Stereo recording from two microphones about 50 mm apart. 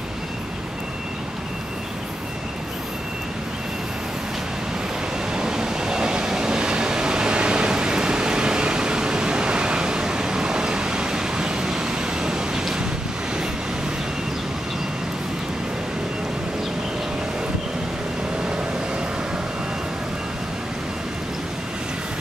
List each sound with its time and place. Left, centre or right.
5.3 s train: centre